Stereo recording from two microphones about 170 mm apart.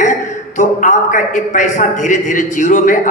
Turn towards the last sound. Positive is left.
turn(degrees=50)  # may be behind; listen again after turning